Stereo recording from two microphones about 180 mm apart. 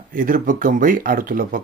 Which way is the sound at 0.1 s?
50° right (ahead or behind).